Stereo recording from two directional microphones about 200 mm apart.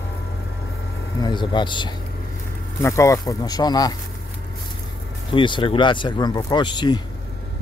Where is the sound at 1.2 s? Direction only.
20° left (ahead or behind).